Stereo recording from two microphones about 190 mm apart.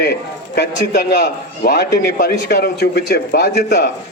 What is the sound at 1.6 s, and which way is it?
A man's voice, 55° left (ahead or behind).